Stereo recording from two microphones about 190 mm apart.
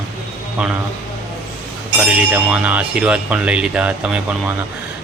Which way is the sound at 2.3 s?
5° right (ahead or behind).